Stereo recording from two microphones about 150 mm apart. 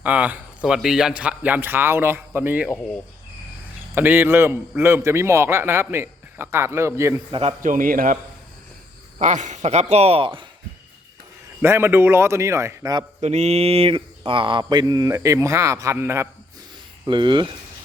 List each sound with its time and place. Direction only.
0.0 s a man's voice: 10° right (ahead or behind)
3.9 s a man's voice: 15° right (ahead or behind)
7.3 s speech: 35° right (ahead or behind)
7.6 s a man's voice: 65° right (ahead or behind)
9.1 s speech: 55° right (ahead or behind); by 10.4 s 35° right (ahead or behind)
11.6 s mantra: 15° right (ahead or behind)
13.2 s mantra: 45° right (ahead or behind); by 16.3 s 15° right (ahead or behind)
17.1 s speech: 30° right (ahead or behind)